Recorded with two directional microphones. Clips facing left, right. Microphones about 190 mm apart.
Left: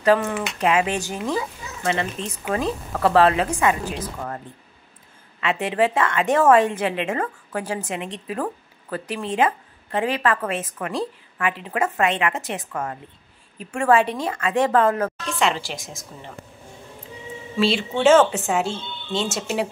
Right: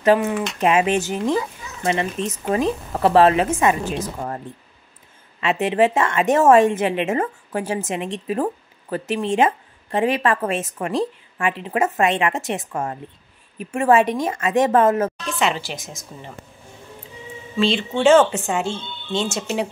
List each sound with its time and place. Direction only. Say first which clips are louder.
0.6 s a woman's voice: right 3 dB; 25° right (ahead or behind)
5.4 s a woman's voice: right 3 dB; 25° right (ahead or behind)
15.2 s a woman's voice: even; centre (ahead or behind)
17.6 s a woman's voice: right 1 dB; 5° left (ahead or behind)